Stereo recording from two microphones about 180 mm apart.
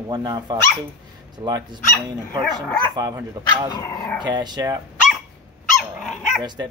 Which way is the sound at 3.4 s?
20° right (ahead or behind).